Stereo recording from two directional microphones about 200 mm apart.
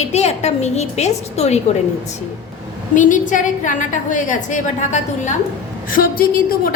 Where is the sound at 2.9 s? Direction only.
40° left (ahead or behind).